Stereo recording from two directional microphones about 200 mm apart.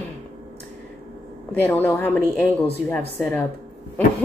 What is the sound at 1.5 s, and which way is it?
A woman's voice, 10° left (ahead or behind).